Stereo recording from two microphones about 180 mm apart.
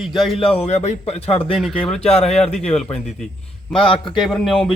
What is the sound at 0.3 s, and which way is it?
A man's voice, 30° left (ahead or behind).